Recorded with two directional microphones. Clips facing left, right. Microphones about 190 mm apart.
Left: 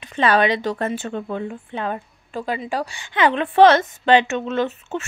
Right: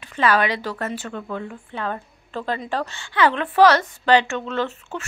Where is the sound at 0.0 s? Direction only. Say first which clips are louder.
Left 2 dB; 25° left (ahead or behind).